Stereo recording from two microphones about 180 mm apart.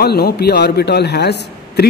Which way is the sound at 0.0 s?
60° left (ahead or behind).